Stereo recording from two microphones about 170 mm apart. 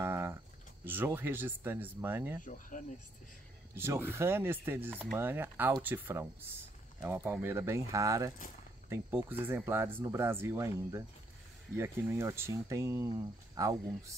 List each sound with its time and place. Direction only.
0.0 s a sound: 15° right (ahead or behind)
0.8 s speech: 15° right (ahead or behind)
2.7 s speech: 50° left (ahead or behind)
3.7 s speech: 15° right (ahead or behind)